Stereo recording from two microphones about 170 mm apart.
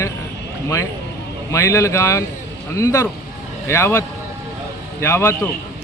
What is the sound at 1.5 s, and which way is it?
A man's voice, 15° left (ahead or behind).